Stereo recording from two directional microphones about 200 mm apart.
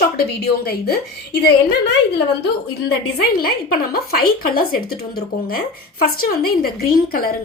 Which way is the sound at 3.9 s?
50° left (ahead or behind).